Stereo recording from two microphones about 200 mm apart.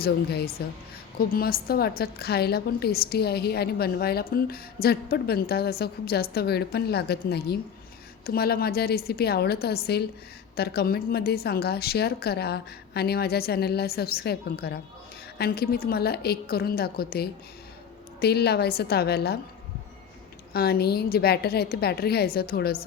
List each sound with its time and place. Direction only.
0.0 s a woman's voice: 50° left (ahead or behind)
20.5 s a woman's voice: 50° left (ahead or behind)